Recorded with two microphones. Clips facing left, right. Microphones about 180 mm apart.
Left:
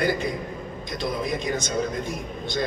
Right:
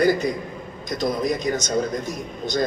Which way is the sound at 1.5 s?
40° right (ahead or behind).